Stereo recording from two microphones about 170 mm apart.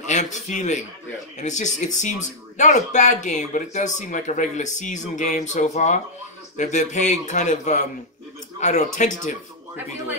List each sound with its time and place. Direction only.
0.0 s speech: 45° left (ahead or behind)